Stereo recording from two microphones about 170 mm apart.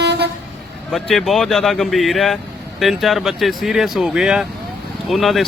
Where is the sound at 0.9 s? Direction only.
Centre (ahead or behind).